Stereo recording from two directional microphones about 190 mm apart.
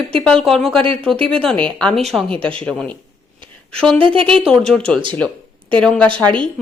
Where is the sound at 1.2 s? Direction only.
30° right (ahead or behind).